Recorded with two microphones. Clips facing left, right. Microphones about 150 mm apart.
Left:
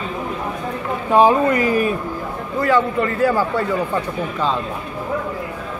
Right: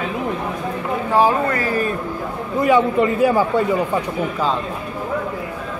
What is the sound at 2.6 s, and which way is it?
A man's voice, 15° right (ahead or behind).